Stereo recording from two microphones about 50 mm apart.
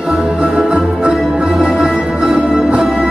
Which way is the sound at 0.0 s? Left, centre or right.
Centre.